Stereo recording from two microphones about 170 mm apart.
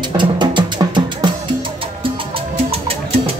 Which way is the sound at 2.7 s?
35° right (ahead or behind).